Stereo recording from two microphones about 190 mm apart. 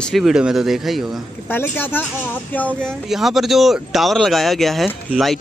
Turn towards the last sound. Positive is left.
turn(degrees=0)  # may be behind; listen again after turning